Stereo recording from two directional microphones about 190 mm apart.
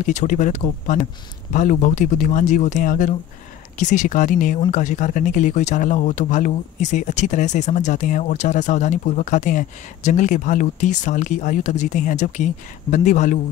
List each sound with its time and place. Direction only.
0.0 s speech: 40° left (ahead or behind)